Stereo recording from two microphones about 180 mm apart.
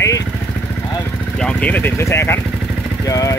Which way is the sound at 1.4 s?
10° left (ahead or behind).